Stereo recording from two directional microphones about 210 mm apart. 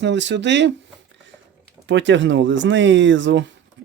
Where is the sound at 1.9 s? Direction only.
60° right (ahead or behind).